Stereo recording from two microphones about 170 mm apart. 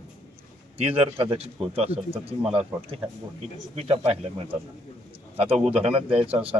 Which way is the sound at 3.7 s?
35° right (ahead or behind).